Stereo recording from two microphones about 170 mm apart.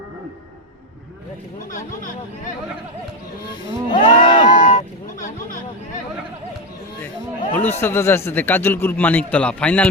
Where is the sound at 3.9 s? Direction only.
50° left (ahead or behind).